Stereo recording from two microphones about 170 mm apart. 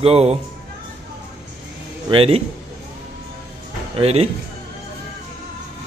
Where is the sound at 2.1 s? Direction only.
35° right (ahead or behind).